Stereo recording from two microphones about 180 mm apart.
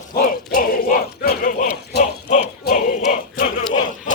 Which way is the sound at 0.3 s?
55° left (ahead or behind).